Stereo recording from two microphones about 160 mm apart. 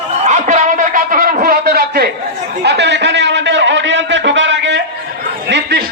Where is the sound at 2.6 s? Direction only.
90° right.